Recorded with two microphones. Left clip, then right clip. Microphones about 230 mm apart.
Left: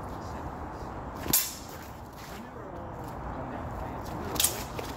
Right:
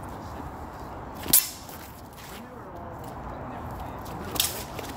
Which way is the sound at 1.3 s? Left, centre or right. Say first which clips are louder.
Right 4 dB; right.